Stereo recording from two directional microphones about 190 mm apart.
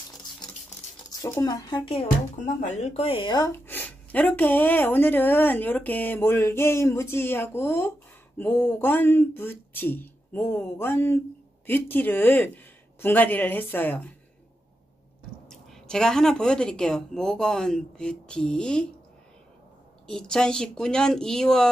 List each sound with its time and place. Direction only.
1.2 s speech: 20° left (ahead or behind)
2.3 s speech: 40° left (ahead or behind); by 14.1 s 10° left (ahead or behind)
15.4 s speech: 5° left (ahead or behind)
20.1 s speech: 5° left (ahead or behind)